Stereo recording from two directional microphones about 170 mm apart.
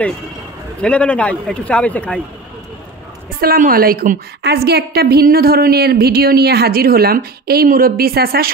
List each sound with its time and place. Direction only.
0.8 s a man's voice: 5° left (ahead or behind)
3.3 s a woman's voice: 55° right (ahead or behind)